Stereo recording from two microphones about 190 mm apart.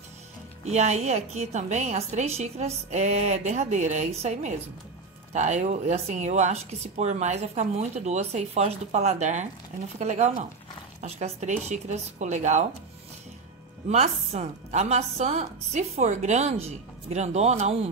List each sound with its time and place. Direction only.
0.7 s speech: 35° right (ahead or behind)
13.8 s speech: 35° right (ahead or behind)